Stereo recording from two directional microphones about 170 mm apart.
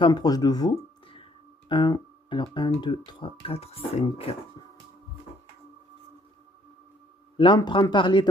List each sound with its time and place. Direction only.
0.0 s a man's voice: 25° left (ahead or behind)
7.3 s a man's voice: 30° left (ahead or behind)